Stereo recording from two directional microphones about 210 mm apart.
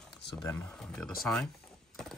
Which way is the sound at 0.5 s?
5° left (ahead or behind).